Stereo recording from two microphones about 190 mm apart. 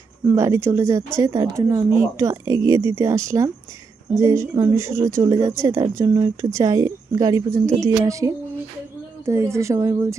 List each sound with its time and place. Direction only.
0.3 s speech: 15° right (ahead or behind)